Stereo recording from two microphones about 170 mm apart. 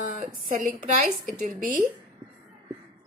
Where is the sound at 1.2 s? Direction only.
55° right (ahead or behind).